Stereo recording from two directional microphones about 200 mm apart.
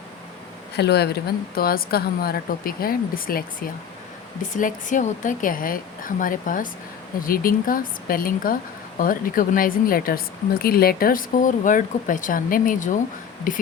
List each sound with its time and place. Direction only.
0.8 s speech: 55° left (ahead or behind)
4.5 s a woman's voice: 40° left (ahead or behind)